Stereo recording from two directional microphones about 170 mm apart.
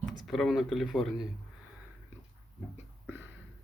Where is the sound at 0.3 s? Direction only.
Centre (ahead or behind).